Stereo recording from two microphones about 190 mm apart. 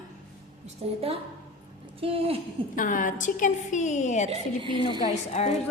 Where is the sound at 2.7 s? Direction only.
45° left (ahead or behind).